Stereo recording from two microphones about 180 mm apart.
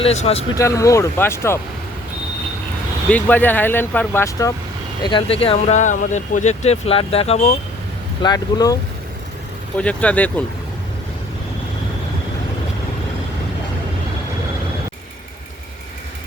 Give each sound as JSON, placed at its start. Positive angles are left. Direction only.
{"t": 0.0, "sound": "speech", "side_deg": 35}
{"t": 0.5, "sound": "speech", "side_deg": 15}
{"t": 3.1, "sound": "speech", "side_deg": 10}
{"t": 5.0, "sound": "speech", "side_deg": 30}
{"t": 8.2, "sound": "speech", "side_deg": 20}
{"t": 9.7, "sound": "speech", "side_deg": 5}